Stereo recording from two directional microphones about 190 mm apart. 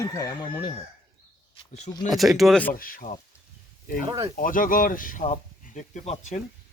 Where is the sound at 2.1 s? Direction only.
Centre (ahead or behind).